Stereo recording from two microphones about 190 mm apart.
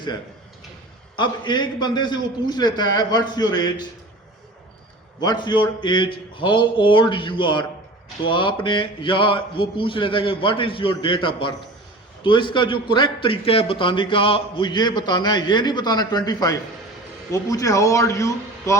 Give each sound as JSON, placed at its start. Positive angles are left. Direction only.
{"t": 1.1, "sound": "a man's voice", "side_deg": 25}
{"t": 5.2, "sound": "a man's voice", "side_deg": 20}